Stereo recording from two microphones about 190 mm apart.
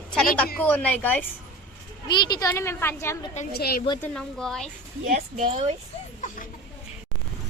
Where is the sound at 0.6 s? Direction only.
10° left (ahead or behind).